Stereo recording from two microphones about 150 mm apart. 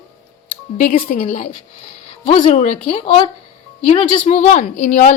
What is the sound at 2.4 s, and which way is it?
Speech, 50° left (ahead or behind).